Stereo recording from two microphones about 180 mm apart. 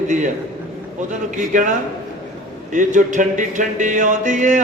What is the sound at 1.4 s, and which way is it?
Speech, 45° right (ahead or behind).